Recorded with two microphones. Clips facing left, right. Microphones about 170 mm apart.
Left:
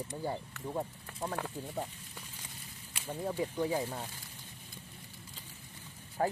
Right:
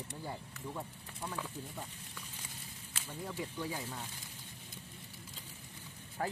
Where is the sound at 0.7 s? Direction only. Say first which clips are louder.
Left 7 dB; 60° left (ahead or behind).